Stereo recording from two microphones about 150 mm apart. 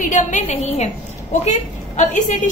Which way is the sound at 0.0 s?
55° left (ahead or behind).